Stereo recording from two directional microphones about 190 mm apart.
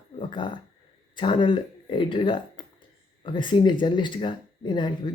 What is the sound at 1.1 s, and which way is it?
Speech, 25° left (ahead or behind).